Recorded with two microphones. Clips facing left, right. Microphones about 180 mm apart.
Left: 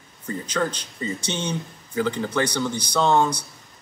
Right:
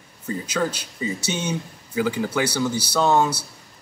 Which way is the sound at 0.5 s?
10° right (ahead or behind).